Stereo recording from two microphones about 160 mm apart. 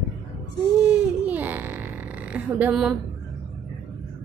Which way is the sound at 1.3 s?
10° right (ahead or behind).